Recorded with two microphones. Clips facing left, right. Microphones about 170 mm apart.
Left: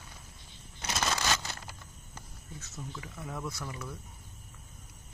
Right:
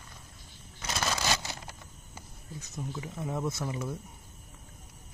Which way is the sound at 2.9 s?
25° right (ahead or behind).